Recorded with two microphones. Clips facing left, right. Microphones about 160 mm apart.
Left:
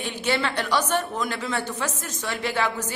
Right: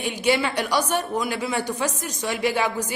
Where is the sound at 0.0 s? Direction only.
15° right (ahead or behind).